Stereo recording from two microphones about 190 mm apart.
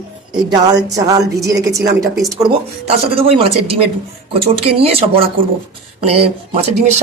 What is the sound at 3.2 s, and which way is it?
Speech, 30° right (ahead or behind).